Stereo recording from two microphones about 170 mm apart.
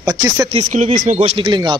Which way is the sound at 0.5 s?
40° right (ahead or behind).